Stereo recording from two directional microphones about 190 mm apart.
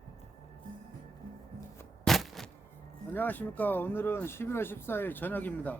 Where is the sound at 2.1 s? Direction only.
Centre (ahead or behind).